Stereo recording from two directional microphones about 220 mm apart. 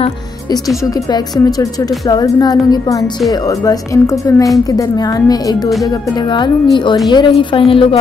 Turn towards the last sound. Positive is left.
turn(degrees=25)  # may be behind; listen again after turning